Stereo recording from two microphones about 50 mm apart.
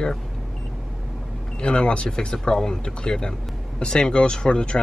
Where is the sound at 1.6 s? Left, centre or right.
Centre.